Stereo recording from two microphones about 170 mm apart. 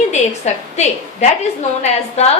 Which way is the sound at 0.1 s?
40° left (ahead or behind).